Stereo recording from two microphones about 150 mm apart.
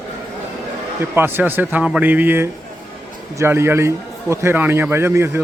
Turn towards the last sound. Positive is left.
turn(degrees=-15)  # may be behind; listen again after turning